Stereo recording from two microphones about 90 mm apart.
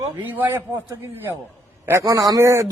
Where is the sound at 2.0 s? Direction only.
40° right (ahead or behind).